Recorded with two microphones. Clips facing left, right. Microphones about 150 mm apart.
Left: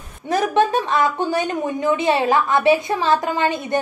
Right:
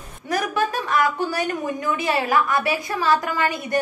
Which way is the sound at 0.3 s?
25° left (ahead or behind).